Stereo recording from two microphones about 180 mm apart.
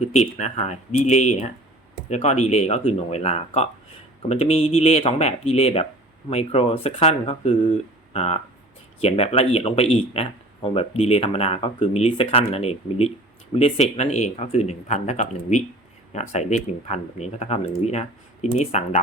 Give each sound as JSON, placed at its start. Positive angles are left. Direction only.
{"t": 0.0, "sound": "speech", "side_deg": 35}